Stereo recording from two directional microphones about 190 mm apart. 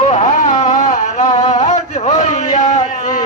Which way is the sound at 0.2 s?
40° left (ahead or behind).